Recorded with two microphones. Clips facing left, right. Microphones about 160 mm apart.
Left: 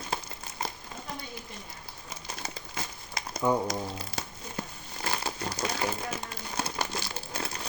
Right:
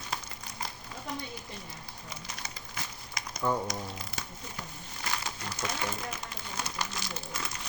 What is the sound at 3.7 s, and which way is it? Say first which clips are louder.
Music: left 4 dB; 30° left (ahead or behind).